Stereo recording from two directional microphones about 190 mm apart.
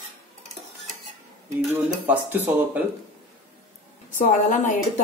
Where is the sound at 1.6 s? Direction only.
5° right (ahead or behind).